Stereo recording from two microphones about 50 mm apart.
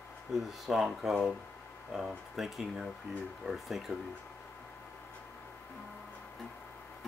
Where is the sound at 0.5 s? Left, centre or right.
Centre.